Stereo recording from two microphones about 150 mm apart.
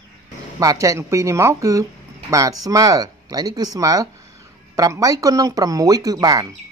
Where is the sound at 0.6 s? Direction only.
20° right (ahead or behind).